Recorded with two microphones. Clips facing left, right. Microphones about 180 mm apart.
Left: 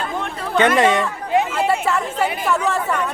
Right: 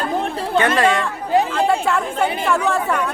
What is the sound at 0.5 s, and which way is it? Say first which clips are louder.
Speech: left 2 dB; 20° left (ahead or behind).